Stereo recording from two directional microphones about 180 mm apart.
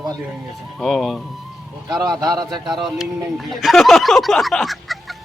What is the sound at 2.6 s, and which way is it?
Speech, centre (ahead or behind).